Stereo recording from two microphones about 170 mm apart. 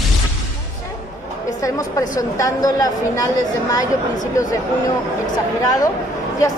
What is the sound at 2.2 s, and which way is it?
A woman's voice, 20° left (ahead or behind).